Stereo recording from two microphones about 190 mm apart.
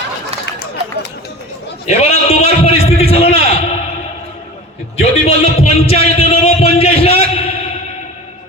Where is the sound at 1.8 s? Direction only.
35° left (ahead or behind).